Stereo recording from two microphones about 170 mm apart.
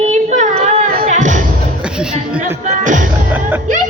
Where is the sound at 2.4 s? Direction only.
50° right (ahead or behind).